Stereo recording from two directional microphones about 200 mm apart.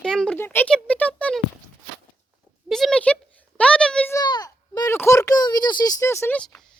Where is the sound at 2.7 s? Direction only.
Centre (ahead or behind).